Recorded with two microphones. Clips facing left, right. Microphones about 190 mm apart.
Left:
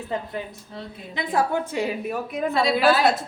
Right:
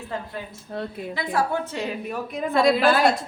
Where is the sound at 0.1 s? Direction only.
20° left (ahead or behind).